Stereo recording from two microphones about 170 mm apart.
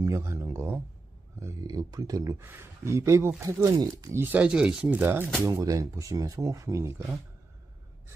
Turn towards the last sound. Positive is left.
turn(degrees=-15)  # may be behind; listen again after turning